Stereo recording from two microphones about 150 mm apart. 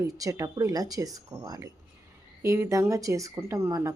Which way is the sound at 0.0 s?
25° right (ahead or behind).